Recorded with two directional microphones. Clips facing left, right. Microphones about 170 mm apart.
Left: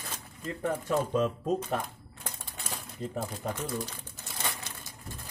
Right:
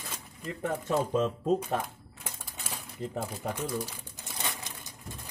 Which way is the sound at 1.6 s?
10° right (ahead or behind).